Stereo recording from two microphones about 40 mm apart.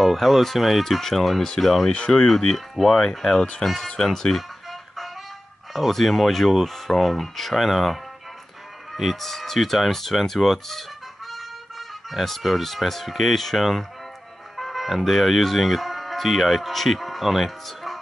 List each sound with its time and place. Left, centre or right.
0.0 s speech: centre
1.9 s speech: left
2.5 s speech: centre
2.9 s speech: centre
3.6 s speech: centre
5.7 s speech: centre
9.1 s speech: centre
12.1 s speech: centre